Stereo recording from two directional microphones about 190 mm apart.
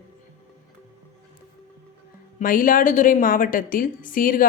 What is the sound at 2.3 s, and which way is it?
A woman's voice, 45° left (ahead or behind).